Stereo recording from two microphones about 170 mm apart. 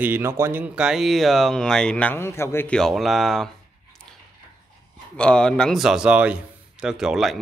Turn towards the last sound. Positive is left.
turn(degrees=-5)  # may be behind; listen again after turning